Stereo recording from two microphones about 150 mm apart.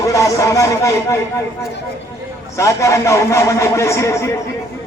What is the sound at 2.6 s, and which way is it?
A man's voice, 20° left (ahead or behind).